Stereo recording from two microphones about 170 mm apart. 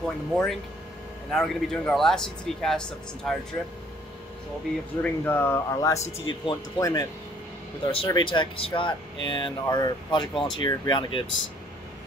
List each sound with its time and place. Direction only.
0.0 s speech: centre (ahead or behind)
5.0 s speech: 10° left (ahead or behind)
7.8 s speech: 30° left (ahead or behind)